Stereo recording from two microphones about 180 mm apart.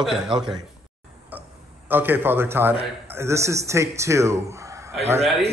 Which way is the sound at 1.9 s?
10° right (ahead or behind).